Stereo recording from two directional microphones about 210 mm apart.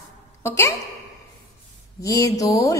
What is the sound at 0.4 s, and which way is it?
Speech, 10° left (ahead or behind).